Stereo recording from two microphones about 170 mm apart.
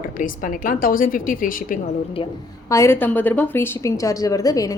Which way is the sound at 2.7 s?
15° left (ahead or behind).